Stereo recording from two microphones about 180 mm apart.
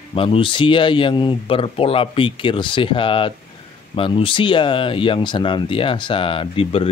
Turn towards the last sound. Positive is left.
turn(degrees=30)  # may be behind; listen again after turning